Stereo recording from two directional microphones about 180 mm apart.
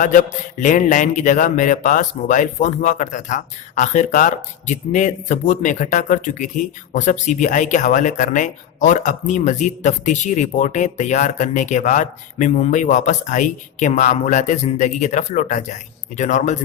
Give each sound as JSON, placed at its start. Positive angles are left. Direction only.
{"t": 0.0, "sound": "speech", "side_deg": 45}